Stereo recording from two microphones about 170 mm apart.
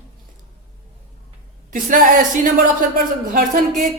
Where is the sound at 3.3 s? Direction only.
50° right (ahead or behind).